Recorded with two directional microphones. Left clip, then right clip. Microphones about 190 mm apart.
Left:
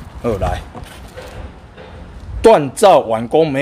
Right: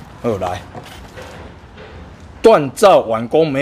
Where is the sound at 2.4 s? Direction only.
5° left (ahead or behind).